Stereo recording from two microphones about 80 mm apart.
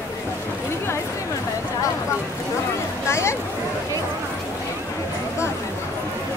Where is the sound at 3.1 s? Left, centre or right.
Left.